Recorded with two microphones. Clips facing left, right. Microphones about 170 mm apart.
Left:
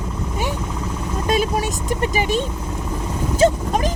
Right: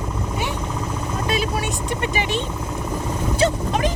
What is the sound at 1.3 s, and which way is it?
Vehicle, 45° left (ahead or behind).